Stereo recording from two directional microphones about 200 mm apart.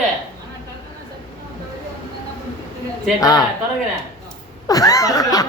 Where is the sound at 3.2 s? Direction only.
20° left (ahead or behind).